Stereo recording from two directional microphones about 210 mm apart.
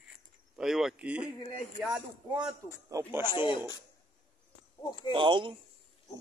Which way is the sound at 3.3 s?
20° left (ahead or behind).